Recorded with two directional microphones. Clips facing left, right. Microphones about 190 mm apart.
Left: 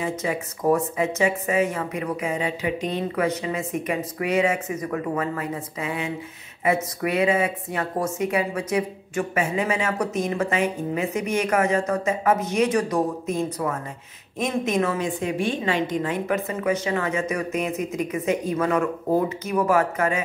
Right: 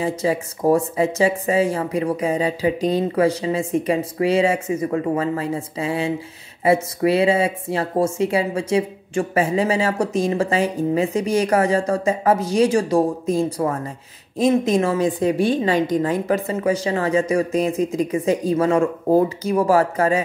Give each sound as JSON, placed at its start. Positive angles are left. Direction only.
{"t": 0.0, "sound": "speech", "side_deg": -30}